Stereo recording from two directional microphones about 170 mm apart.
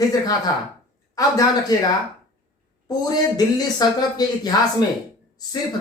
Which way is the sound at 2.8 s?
25° left (ahead or behind).